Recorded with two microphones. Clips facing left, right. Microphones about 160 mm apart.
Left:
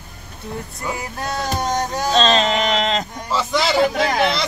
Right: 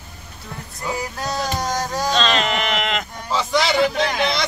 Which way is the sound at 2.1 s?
35° left (ahead or behind).